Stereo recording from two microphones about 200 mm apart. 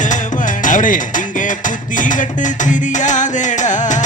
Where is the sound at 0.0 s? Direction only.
40° left (ahead or behind).